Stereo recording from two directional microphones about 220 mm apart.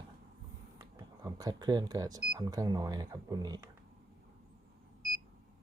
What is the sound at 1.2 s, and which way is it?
Speech, 15° right (ahead or behind).